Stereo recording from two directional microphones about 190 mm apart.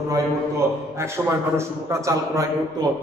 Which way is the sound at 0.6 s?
15° right (ahead or behind).